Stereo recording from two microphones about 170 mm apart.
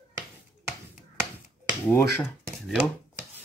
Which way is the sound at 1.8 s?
15° left (ahead or behind).